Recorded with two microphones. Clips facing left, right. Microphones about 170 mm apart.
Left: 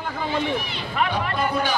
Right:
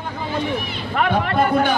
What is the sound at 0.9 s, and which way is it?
Speech, 55° right (ahead or behind).